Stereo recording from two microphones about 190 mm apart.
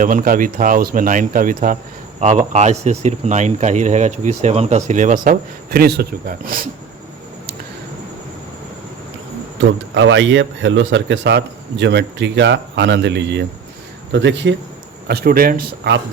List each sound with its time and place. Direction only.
0.0 s speech: 45° right (ahead or behind)
9.6 s a man's voice: 75° right (ahead or behind)
15.0 s speech: 55° right (ahead or behind)